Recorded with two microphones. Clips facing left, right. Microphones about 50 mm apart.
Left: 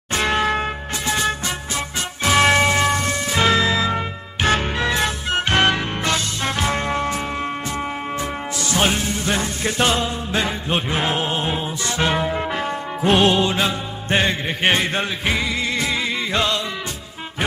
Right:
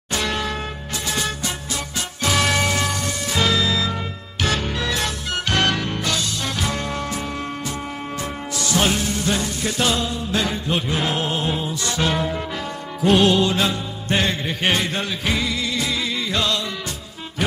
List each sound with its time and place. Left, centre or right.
0.1 s music: left
2.2 s church bell: left
3.3 s music: left
8.8 s music: left
12.4 s music: left